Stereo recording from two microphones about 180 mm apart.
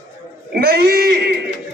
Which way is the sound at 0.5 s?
60° right (ahead or behind).